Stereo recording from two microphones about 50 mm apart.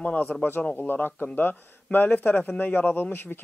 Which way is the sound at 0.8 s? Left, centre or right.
Left.